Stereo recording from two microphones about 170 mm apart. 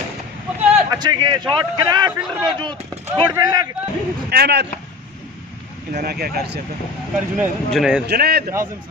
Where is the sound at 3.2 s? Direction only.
25° right (ahead or behind).